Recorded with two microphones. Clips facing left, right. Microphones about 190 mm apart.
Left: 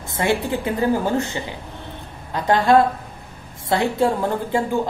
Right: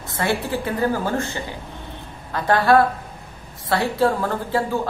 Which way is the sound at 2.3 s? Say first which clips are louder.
Left 1 dB; 20° left (ahead or behind).